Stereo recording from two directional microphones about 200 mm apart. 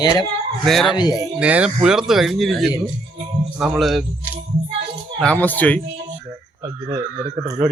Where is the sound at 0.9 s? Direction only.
20° left (ahead or behind).